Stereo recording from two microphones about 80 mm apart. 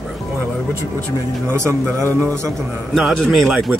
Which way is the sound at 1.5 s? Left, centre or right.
Right.